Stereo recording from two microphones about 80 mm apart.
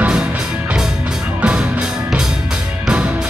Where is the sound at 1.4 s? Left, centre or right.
Centre.